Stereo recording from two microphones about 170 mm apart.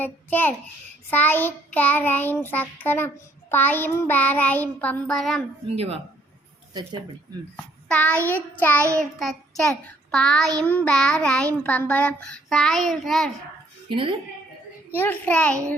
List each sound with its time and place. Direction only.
0.0 s child singing: 10° left (ahead or behind)
5.6 s speech: 35° right (ahead or behind)
7.5 s a child's voice: 10° left (ahead or behind)
8.5 s child singing: 10° left (ahead or behind)
9.0 s a child's voice: centre (ahead or behind)
13.8 s a woman's voice: 30° right (ahead or behind)
14.9 s child singing: 10° left (ahead or behind)